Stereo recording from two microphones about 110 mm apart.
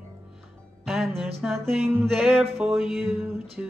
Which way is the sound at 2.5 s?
20° right (ahead or behind).